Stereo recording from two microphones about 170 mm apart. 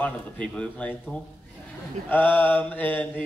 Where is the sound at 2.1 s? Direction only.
10° left (ahead or behind).